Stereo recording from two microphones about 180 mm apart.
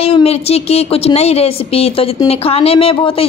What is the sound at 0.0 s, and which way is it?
A woman's voice, 35° left (ahead or behind).